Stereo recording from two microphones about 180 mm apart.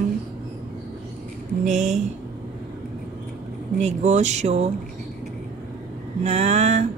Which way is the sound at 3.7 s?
40° right (ahead or behind).